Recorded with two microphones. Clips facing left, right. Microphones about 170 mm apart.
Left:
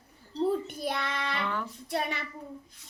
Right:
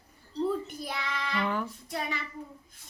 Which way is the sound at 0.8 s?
60° left (ahead or behind).